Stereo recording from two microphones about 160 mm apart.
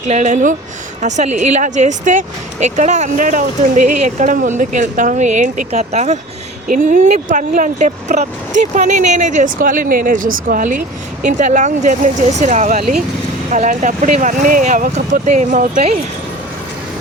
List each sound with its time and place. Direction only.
0.1 s speech: 50° right (ahead or behind)
6.7 s speech: 55° right (ahead or behind)